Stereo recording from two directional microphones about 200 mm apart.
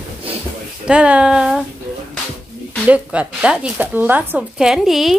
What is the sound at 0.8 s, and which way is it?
Speech, 5° right (ahead or behind).